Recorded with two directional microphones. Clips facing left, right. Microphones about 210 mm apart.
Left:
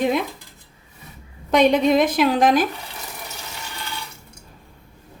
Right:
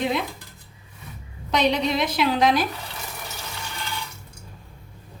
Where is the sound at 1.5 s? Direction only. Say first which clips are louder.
Left 6 dB; 50° left (ahead or behind).